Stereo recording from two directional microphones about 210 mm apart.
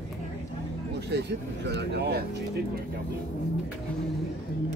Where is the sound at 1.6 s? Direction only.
55° right (ahead or behind).